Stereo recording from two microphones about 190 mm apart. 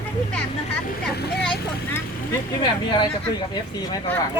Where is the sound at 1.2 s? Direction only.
60° left (ahead or behind).